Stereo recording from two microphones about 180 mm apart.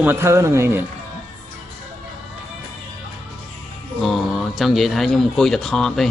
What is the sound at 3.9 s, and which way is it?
Speech, centre (ahead or behind).